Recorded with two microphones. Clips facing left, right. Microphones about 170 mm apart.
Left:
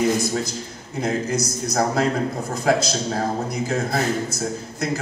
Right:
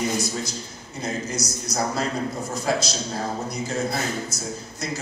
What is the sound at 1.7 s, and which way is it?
A man's voice, 55° left (ahead or behind).